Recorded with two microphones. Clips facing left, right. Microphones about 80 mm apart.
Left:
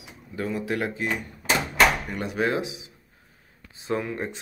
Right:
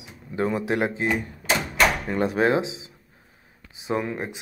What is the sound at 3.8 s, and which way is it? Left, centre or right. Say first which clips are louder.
Speech: right 2 dB; centre.